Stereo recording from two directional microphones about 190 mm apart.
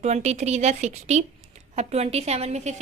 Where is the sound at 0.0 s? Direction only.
35° right (ahead or behind).